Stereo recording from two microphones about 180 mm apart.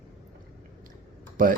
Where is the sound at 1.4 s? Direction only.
50° right (ahead or behind).